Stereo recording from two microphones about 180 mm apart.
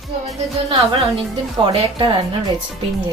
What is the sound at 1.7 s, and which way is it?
Speech, 25° right (ahead or behind).